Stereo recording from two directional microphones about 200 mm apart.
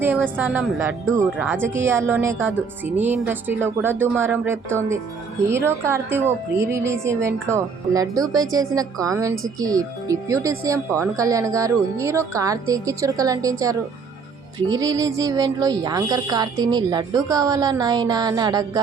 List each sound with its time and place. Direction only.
0.0 s a woman's voice: 10° right (ahead or behind)